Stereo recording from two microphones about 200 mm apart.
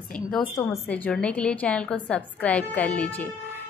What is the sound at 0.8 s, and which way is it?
Speech, 10° left (ahead or behind).